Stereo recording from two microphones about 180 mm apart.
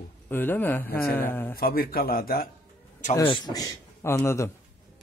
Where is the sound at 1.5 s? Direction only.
55° left (ahead or behind).